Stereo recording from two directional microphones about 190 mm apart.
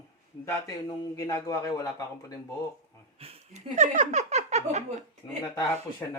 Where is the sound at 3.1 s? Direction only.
30° right (ahead or behind).